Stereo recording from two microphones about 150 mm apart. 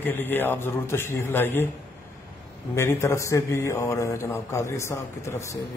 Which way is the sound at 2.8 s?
20° left (ahead or behind).